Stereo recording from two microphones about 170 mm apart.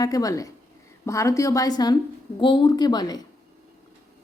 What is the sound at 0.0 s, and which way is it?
A woman's voice, 20° left (ahead or behind).